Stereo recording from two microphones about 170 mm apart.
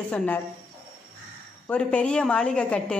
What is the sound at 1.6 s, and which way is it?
A woman's voice, 5° left (ahead or behind).